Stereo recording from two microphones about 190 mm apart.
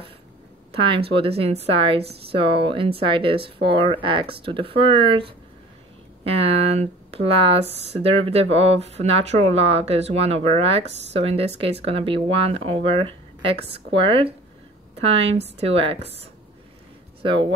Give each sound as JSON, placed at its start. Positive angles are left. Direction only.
{"t": 0.7, "sound": "a woman's voice", "side_deg": -25}